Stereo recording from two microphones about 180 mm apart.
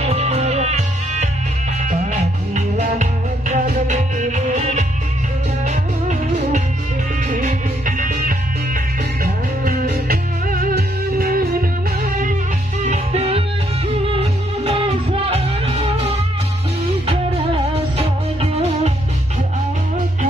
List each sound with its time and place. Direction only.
0.0 s music: 35° right (ahead or behind)
12.8 s music: 40° right (ahead or behind)
17.5 s music: 35° right (ahead or behind)